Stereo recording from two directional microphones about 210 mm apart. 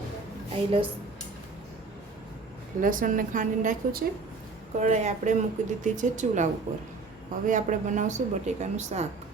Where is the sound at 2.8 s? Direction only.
40° right (ahead or behind).